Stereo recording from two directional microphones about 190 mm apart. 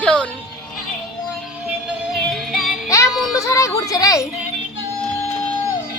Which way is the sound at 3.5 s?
15° left (ahead or behind).